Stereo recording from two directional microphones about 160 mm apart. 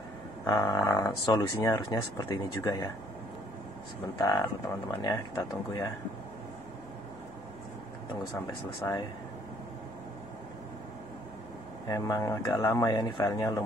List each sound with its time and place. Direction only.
0.5 s speech: 20° left (ahead or behind)
5.0 s speech: 25° left (ahead or behind)
8.8 s speech: 20° left (ahead or behind)
11.9 s speech: 20° left (ahead or behind)